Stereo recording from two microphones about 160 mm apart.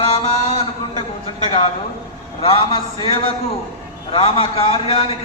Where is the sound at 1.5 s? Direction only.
35° left (ahead or behind).